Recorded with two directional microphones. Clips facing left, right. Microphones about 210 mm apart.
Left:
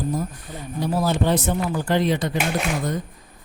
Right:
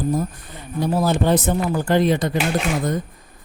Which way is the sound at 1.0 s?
50° right (ahead or behind).